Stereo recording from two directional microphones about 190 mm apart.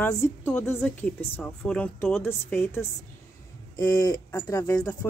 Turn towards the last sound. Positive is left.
turn(degrees=20)  # may be behind; listen again after turning